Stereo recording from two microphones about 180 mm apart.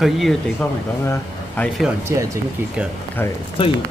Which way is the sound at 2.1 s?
15° right (ahead or behind).